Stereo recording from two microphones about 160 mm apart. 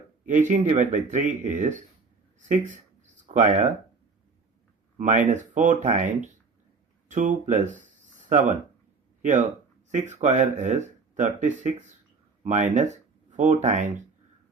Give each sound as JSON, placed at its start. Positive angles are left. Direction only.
{"t": 0.3, "sound": "speech", "side_deg": -50}
{"t": 3.3, "sound": "speech", "side_deg": -50}
{"t": 4.9, "sound": "speech", "side_deg": -50}